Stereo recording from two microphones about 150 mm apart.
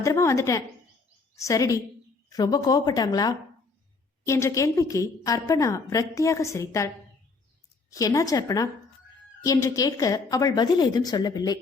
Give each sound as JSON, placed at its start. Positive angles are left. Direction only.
{"t": 0.0, "sound": "a woman's voice", "side_deg": 20}